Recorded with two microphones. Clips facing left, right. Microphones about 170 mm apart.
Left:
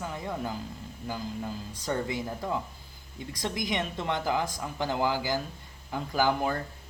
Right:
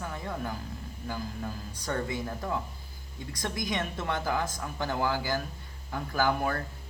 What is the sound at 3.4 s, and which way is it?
A woman's voice, 20° left (ahead or behind).